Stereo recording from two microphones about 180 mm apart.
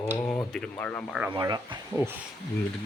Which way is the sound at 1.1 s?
5° right (ahead or behind).